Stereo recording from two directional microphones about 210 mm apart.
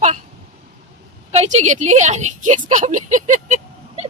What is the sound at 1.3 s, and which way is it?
A woman's voice, 30° right (ahead or behind).